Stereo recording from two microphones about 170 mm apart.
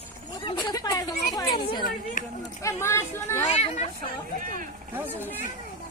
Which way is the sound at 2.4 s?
20° left (ahead or behind).